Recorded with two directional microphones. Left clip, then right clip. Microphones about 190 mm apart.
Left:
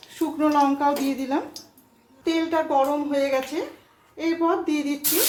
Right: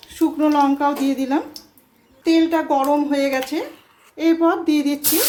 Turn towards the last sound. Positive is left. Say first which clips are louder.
# right 5 dB
turn(degrees=-45)  # may be behind; listen again after turning